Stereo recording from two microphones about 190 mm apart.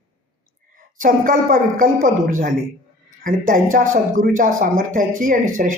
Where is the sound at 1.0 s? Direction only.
45° right (ahead or behind).